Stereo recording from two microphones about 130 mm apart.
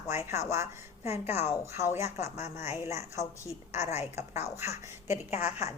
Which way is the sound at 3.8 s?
60° left (ahead or behind).